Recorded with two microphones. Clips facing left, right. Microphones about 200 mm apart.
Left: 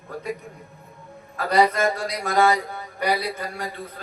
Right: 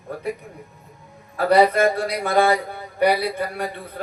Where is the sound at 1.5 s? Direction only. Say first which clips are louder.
Right 4 dB; 60° right (ahead or behind).